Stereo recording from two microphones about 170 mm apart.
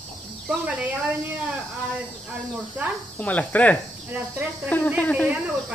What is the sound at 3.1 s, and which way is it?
Speech, 10° left (ahead or behind).